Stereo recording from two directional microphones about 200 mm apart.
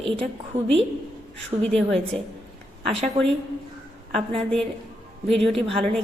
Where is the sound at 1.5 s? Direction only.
20° right (ahead or behind).